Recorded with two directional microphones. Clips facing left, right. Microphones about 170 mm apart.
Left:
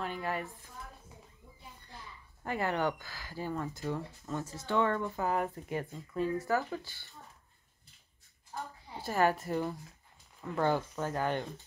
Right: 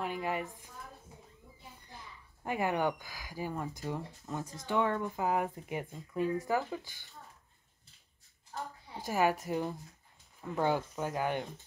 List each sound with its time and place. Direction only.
0.0 s speech: 15° right (ahead or behind)
2.4 s speech: 15° right (ahead or behind)
9.0 s speech: 10° right (ahead or behind)